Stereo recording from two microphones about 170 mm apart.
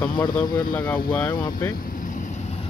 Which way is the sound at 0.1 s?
25° left (ahead or behind).